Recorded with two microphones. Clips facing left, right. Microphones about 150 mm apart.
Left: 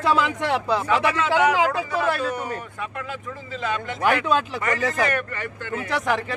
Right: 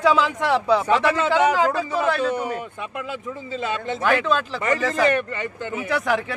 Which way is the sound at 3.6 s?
30° right (ahead or behind).